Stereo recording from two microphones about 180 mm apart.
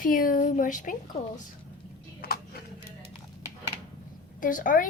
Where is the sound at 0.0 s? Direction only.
50° left (ahead or behind).